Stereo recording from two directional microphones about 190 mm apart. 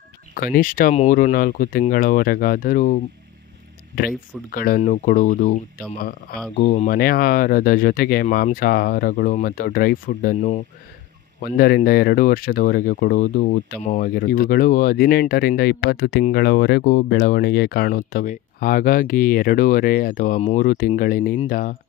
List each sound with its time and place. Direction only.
0.3 s speech: 45° left (ahead or behind)
11.4 s speech: 50° left (ahead or behind)